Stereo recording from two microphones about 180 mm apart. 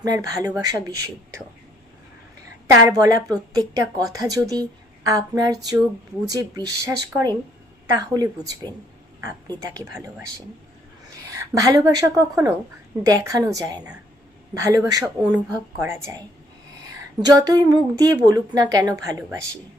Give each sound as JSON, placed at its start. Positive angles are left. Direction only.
{"t": 0.0, "sound": "a woman's voice", "side_deg": -20}
{"t": 2.6, "sound": "a woman's voice", "side_deg": -20}
{"t": 11.3, "sound": "a woman's voice", "side_deg": -15}
{"t": 17.2, "sound": "a woman's voice", "side_deg": -20}